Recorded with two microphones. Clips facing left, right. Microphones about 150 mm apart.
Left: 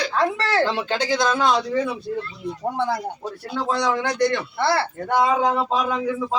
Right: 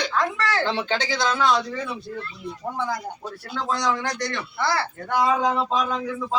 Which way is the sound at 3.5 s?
25° left (ahead or behind).